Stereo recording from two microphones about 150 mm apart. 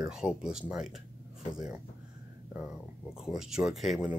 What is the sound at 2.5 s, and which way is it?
Speech, 5° right (ahead or behind).